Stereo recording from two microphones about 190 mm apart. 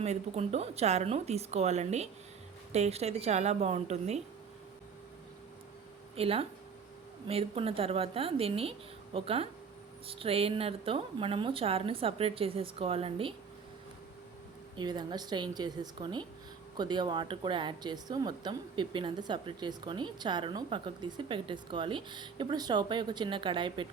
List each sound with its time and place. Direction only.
0.0 s a woman's voice: 35° right (ahead or behind)
6.1 s a woman's voice: 30° right (ahead or behind)
14.8 s speech: 20° right (ahead or behind)